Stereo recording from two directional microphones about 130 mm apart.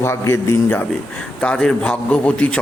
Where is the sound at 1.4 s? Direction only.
5° left (ahead or behind).